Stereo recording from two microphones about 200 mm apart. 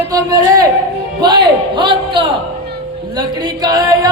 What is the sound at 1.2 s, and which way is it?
A man's voice, 20° right (ahead or behind).